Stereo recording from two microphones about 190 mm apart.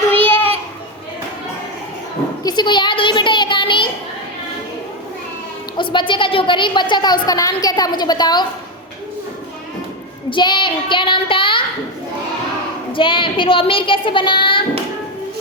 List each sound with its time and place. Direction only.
0.1 s child singing: 10° left (ahead or behind)
2.4 s a woman's voice: 20° left (ahead or behind)
5.7 s a woman's voice: 25° left (ahead or behind)
10.2 s a woman's voice: 25° left (ahead or behind)
12.9 s a woman's voice: 25° left (ahead or behind)